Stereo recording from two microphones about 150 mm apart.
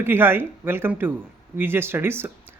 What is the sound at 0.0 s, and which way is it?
Speech, 15° right (ahead or behind).